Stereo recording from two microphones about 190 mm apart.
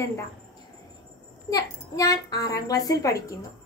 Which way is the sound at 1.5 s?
20° left (ahead or behind).